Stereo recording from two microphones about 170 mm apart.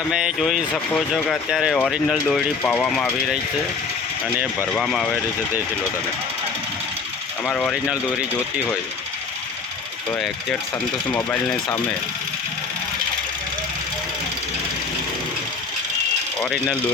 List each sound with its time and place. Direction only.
0.1 s speech: 5° right (ahead or behind)
4.7 s speech: centre (ahead or behind)
7.4 s speech: 5° left (ahead or behind)
11.1 s speech: 10° left (ahead or behind)
16.4 s speech: centre (ahead or behind)